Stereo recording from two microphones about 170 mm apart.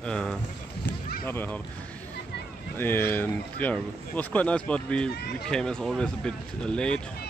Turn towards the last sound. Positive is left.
turn(degrees=5)  # may be behind; listen again after turning